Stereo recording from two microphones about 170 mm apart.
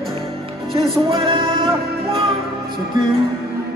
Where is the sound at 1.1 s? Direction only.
30° right (ahead or behind).